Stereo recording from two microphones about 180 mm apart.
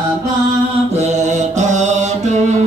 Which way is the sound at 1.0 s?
40° right (ahead or behind).